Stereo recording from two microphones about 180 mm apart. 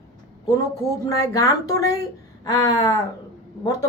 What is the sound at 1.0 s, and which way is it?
A man's voice, 20° left (ahead or behind).